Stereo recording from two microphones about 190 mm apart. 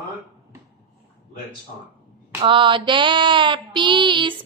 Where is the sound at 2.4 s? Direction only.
25° right (ahead or behind).